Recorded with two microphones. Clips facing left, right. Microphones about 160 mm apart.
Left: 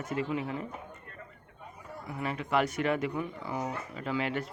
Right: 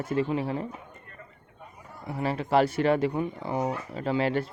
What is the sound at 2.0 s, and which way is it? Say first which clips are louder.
Speech: right 6 dB; 30° right (ahead or behind).